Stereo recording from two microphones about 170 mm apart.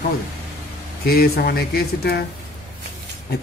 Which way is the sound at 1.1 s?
65° left (ahead or behind).